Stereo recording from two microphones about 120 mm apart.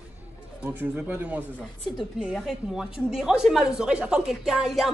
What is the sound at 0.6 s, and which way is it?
Speech, 15° right (ahead or behind).